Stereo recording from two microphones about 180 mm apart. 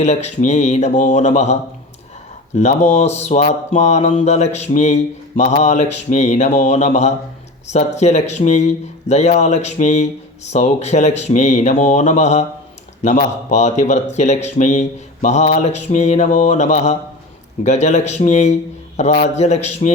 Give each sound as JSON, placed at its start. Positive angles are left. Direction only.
{"t": 0.0, "sound": "speech", "side_deg": 40}
{"t": 2.6, "sound": "speech", "side_deg": 40}